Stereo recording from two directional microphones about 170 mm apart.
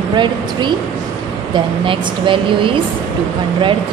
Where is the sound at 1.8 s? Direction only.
30° right (ahead or behind).